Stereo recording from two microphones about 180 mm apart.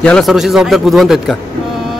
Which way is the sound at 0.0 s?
5° left (ahead or behind).